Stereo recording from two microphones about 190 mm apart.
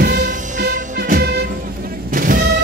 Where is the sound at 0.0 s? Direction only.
45° right (ahead or behind).